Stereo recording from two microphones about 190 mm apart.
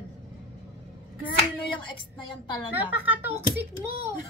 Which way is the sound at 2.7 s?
10° right (ahead or behind).